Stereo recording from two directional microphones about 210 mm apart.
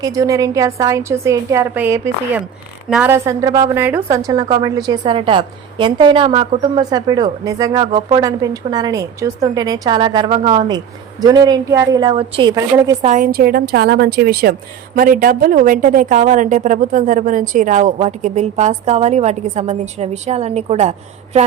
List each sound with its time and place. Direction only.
0.0 s a woman's voice: 15° right (ahead or behind)
13.1 s a woman's voice: 40° right (ahead or behind)